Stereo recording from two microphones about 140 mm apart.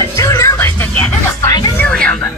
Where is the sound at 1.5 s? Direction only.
30° left (ahead or behind).